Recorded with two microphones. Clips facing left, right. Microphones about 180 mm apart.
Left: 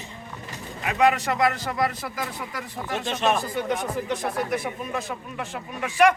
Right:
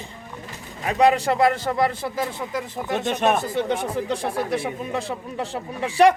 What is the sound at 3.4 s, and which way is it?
A man's voice, 30° right (ahead or behind).